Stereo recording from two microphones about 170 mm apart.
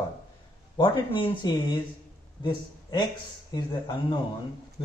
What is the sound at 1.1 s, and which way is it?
A man's voice, 30° left (ahead or behind).